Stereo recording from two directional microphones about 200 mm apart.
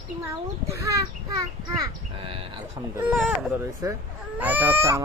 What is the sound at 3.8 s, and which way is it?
A child's voice, 15° right (ahead or behind).